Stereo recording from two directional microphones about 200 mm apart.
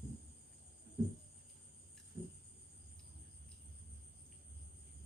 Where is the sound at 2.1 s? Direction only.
15° right (ahead or behind).